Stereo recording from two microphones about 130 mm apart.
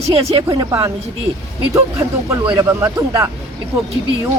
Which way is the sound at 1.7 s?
20° right (ahead or behind).